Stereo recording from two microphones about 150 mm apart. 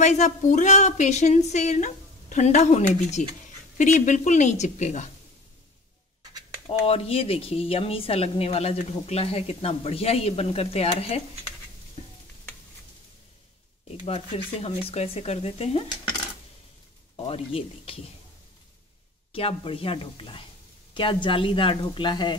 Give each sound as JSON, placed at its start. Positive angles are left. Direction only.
{"t": 0.0, "sound": "speech", "side_deg": 50}
{"t": 6.7, "sound": "speech", "side_deg": 40}
{"t": 14.0, "sound": "speech", "side_deg": 40}
{"t": 17.2, "sound": "speech", "side_deg": 40}
{"t": 19.3, "sound": "speech", "side_deg": 40}